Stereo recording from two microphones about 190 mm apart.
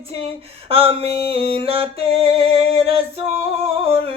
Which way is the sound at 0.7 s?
30° right (ahead or behind).